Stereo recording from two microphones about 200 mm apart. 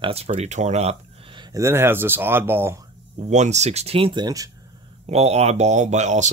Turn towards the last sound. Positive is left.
turn(degrees=-35)  # may be behind; listen again after turning